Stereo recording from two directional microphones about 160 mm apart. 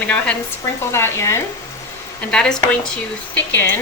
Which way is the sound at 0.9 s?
15° left (ahead or behind).